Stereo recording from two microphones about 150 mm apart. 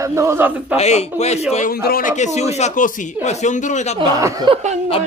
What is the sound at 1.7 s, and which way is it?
Speech, 85° left.